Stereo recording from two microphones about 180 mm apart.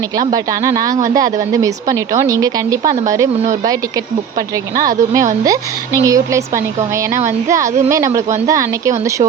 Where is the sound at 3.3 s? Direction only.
35° right (ahead or behind).